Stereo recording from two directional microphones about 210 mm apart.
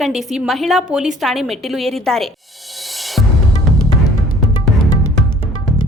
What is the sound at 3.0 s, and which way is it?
Music, centre (ahead or behind).